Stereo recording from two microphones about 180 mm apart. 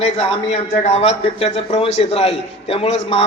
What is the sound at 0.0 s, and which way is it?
A man's voice, 35° left (ahead or behind).